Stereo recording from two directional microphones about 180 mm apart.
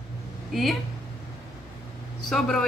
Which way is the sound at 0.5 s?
Centre (ahead or behind).